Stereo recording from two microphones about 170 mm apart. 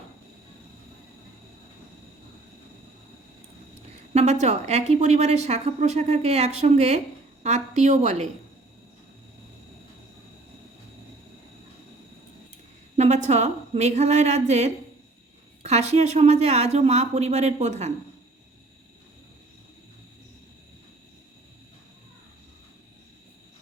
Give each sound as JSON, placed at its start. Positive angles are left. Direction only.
{"t": 4.1, "sound": "a woman's voice", "side_deg": -40}
{"t": 13.0, "sound": "a woman's voice", "side_deg": -40}